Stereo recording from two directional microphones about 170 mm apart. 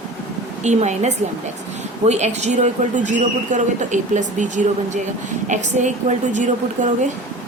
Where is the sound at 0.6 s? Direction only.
45° right (ahead or behind).